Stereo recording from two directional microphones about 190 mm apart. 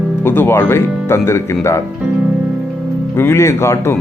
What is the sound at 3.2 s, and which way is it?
Speech, 15° left (ahead or behind).